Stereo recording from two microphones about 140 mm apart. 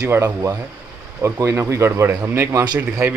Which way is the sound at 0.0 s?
20° right (ahead or behind).